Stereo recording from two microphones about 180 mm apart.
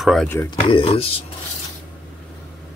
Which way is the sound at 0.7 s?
30° left (ahead or behind).